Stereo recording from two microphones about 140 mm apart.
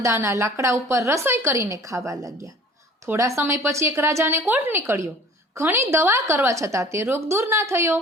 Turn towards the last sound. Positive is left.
turn(degrees=-20)  # may be behind; listen again after turning